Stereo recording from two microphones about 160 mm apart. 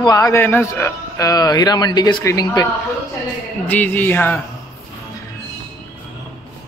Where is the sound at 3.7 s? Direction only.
10° left (ahead or behind).